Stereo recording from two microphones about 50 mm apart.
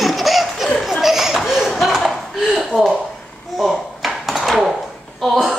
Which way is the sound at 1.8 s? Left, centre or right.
Centre.